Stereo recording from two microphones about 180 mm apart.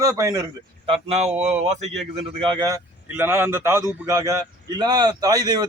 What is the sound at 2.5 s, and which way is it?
A man's voice, 20° right (ahead or behind).